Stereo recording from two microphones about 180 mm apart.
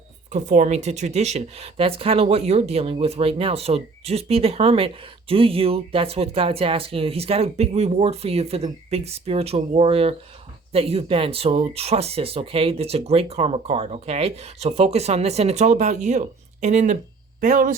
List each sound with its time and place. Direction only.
0.3 s speech: 40° right (ahead or behind)